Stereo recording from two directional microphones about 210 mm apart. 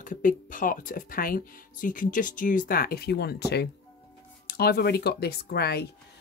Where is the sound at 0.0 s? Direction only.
40° left (ahead or behind).